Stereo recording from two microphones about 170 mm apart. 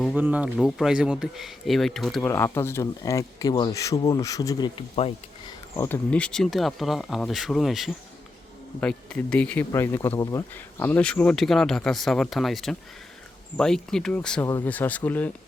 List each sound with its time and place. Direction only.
0.2 s speech: 10° right (ahead or behind)
2.2 s speech: 15° left (ahead or behind)
5.9 s speech: 5° left (ahead or behind)